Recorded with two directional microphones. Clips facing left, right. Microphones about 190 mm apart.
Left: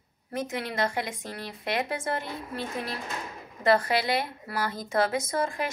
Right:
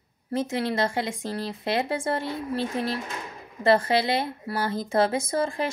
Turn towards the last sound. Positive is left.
turn(degrees=-30)  # may be behind; listen again after turning